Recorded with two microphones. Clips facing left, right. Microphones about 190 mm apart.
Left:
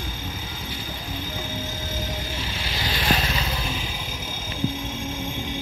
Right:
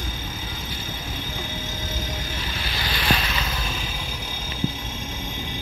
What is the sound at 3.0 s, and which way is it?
Vehicle, 30° left (ahead or behind).